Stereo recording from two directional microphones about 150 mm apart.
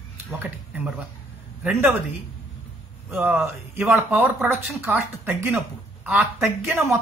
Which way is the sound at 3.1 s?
15° right (ahead or behind).